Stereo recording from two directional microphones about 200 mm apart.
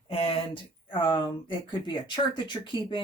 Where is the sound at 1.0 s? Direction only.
25° left (ahead or behind).